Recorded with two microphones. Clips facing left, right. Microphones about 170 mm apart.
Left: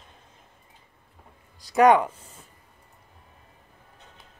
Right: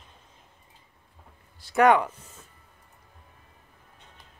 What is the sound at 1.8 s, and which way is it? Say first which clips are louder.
Speech: left 2 dB; 20° left (ahead or behind).